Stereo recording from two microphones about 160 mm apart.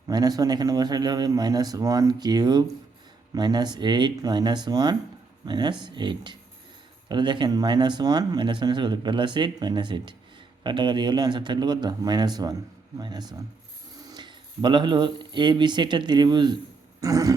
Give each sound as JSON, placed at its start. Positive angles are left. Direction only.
{"t": 0.1, "sound": "speech", "side_deg": -25}